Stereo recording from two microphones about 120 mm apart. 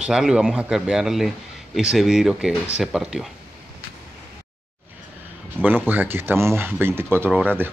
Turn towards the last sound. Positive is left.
turn(degrees=-15)  # may be behind; listen again after turning